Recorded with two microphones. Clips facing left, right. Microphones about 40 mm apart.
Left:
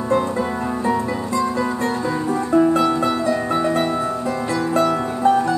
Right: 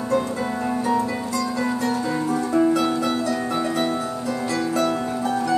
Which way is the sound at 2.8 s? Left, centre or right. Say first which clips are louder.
Left 3 dB; left.